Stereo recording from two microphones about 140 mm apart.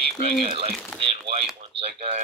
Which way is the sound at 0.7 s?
5° left (ahead or behind).